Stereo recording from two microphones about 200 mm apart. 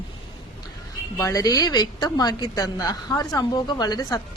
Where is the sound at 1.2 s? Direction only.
15° left (ahead or behind).